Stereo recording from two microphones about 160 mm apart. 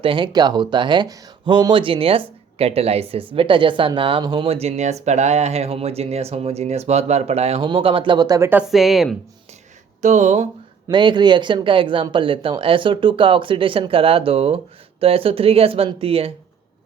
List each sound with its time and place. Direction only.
0.0 s speech: 30° right (ahead or behind)
8.4 s a woman's voice: 5° right (ahead or behind)
10.0 s speech: 45° right (ahead or behind)
10.8 s speech: 30° right (ahead or behind)